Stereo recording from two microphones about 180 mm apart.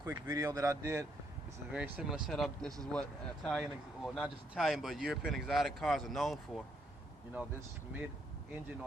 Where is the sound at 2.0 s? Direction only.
5° right (ahead or behind).